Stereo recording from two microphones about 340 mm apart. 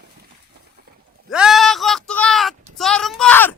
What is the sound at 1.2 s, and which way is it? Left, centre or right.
Speech, centre.